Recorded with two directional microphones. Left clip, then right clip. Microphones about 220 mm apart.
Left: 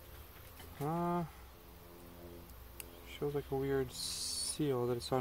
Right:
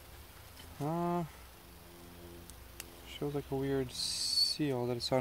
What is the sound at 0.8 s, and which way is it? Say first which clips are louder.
Speech: right 2 dB; 40° right (ahead or behind).